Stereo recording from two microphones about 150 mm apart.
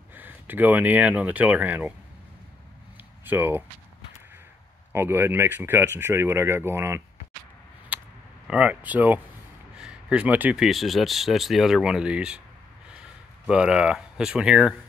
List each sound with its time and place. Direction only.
0.1 s speech: 10° right (ahead or behind)
3.3 s speech: 15° right (ahead or behind)
4.9 s speech: 15° right (ahead or behind)
7.9 s a sound: 10° right (ahead or behind)
8.5 s speech: 10° right (ahead or behind)
13.5 s speech: 5° right (ahead or behind)